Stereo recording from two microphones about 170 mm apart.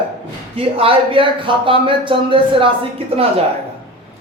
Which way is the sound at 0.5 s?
35° right (ahead or behind).